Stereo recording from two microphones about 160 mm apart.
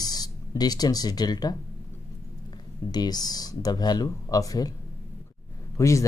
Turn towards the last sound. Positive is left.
turn(degrees=20)  # may be behind; listen again after turning